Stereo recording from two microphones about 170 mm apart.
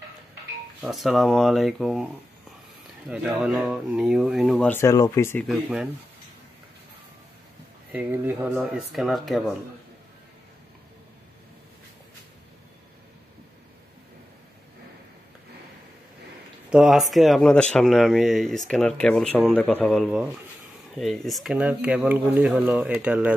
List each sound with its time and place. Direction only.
0.7 s speech: centre (ahead or behind)
3.1 s speech: 5° right (ahead or behind)
4.6 s speech: 15° left (ahead or behind)
5.5 s speech: centre (ahead or behind)
7.9 s speech: 10° right (ahead or behind)
16.7 s speech: centre (ahead or behind)